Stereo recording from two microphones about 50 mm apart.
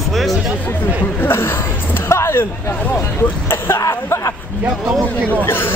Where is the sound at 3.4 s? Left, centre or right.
Left.